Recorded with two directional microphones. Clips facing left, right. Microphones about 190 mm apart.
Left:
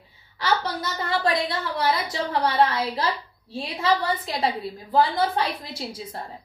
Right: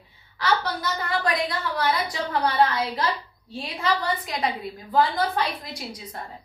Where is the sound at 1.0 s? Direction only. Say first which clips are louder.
Left 3 dB; 25° left (ahead or behind).